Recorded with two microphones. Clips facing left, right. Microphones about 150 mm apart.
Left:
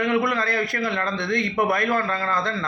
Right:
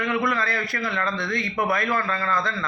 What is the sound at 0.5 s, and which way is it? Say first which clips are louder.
A man's voice: left 3 dB; 20° left (ahead or behind).